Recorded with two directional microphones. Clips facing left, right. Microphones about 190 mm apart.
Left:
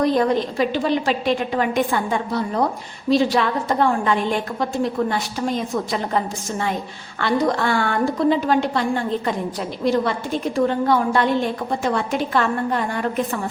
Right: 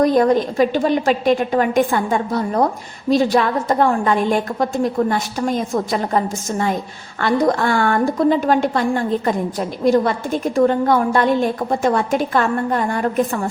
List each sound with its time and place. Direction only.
0.0 s a woman's voice: 45° right (ahead or behind)
7.2 s a woman's voice: 45° right (ahead or behind)
9.8 s a woman's voice: 45° right (ahead or behind)